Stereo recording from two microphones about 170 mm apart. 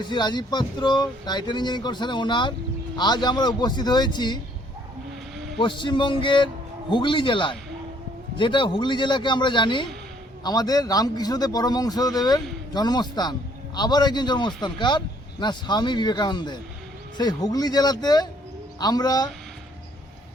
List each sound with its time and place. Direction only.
0.0 s a man's voice: 25° left (ahead or behind)
5.5 s a man's voice: 30° left (ahead or behind)